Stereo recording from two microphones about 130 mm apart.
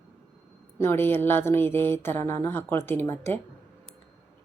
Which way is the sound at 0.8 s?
15° left (ahead or behind).